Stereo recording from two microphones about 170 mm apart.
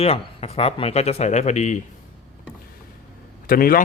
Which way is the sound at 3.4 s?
60° left (ahead or behind).